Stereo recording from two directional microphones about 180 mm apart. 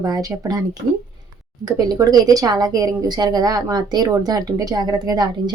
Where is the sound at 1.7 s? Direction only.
20° right (ahead or behind).